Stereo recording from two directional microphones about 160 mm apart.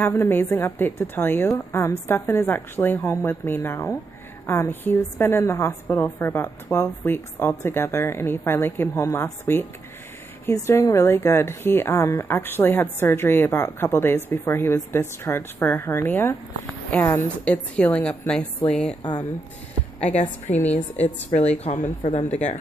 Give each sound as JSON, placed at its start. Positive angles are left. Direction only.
{"t": 0.0, "sound": "speech", "side_deg": 15}
{"t": 20.5, "sound": "speech", "side_deg": 45}
{"t": 21.6, "sound": "speech", "side_deg": 45}